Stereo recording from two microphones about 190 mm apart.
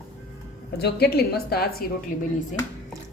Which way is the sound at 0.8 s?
55° left (ahead or behind).